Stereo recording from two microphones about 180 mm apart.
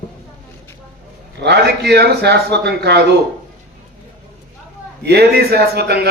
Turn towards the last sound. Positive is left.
turn(degrees=-65)  # may be behind; listen again after turning